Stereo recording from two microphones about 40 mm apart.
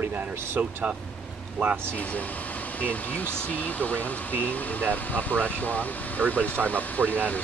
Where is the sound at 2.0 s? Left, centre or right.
Left.